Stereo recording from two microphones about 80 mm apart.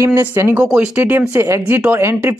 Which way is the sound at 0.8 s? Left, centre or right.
Centre.